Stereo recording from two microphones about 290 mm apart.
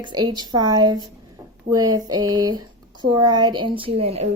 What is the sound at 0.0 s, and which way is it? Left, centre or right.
Speech, centre.